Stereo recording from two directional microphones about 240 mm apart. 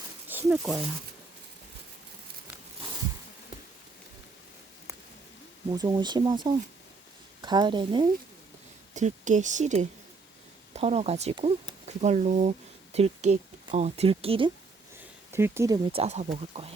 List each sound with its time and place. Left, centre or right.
0.3 s speech: centre
5.7 s a woman's voice: centre
9.0 s speech: right
15.3 s speech: centre
15.9 s a woman's voice: right